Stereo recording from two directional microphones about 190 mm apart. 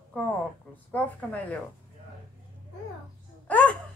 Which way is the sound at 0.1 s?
10° left (ahead or behind).